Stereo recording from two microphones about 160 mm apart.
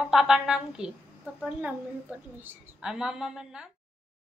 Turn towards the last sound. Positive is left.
turn(degrees=-5)  # may be behind; listen again after turning